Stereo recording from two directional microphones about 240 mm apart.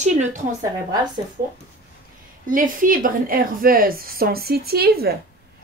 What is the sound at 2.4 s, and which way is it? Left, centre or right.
A woman's voice, right.